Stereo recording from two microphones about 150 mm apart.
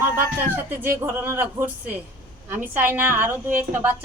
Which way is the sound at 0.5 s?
15° right (ahead or behind).